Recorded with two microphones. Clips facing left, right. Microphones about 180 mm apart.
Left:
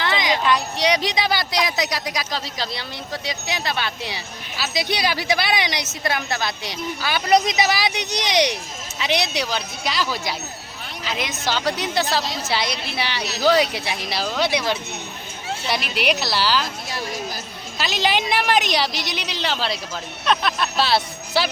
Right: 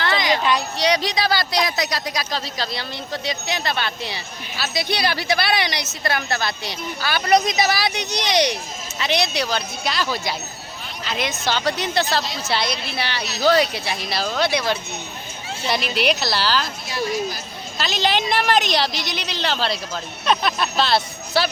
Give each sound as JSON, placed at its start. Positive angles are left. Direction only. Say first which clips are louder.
{"t": 0.0, "sound": "a sound", "louder": "right 1 dB", "side_deg": 15}
{"t": 0.8, "sound": "speech", "louder": "even", "side_deg": 20}
{"t": 16.0, "sound": "speech", "louder": "left 1 dB", "side_deg": 10}
{"t": 17.7, "sound": "speech", "louder": "even", "side_deg": 10}
{"t": 20.2, "sound": "speech", "louder": "right 1 dB", "side_deg": 0}
{"t": 20.8, "sound": "speech", "louder": "even", "side_deg": 10}